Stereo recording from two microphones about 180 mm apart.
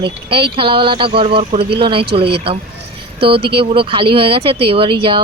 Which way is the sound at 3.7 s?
30° right (ahead or behind).